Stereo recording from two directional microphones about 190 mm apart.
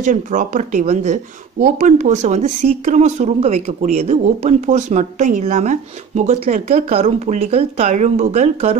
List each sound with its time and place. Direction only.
0.0 s speech: 40° right (ahead or behind)